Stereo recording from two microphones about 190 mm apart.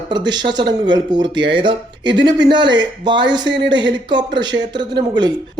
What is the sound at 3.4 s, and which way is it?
Speech, 65° right (ahead or behind).